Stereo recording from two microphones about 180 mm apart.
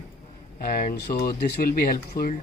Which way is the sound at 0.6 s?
55° left (ahead or behind).